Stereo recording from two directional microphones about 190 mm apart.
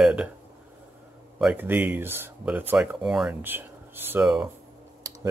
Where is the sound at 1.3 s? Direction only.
5° right (ahead or behind).